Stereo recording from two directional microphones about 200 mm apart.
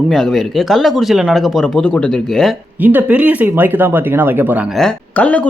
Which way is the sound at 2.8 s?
10° right (ahead or behind).